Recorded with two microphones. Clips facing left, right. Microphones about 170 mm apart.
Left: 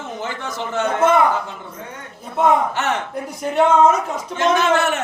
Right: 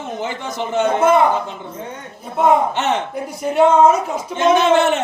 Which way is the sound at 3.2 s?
Centre (ahead or behind).